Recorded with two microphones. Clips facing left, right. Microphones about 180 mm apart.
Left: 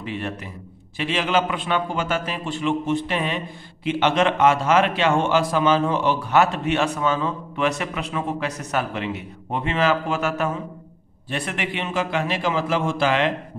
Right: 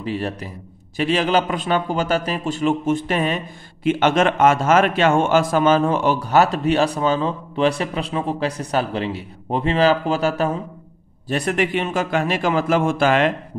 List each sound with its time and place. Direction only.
0.0 s a man's voice: 35° right (ahead or behind)